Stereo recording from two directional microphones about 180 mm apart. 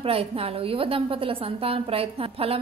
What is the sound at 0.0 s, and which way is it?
A woman's voice, 35° right (ahead or behind).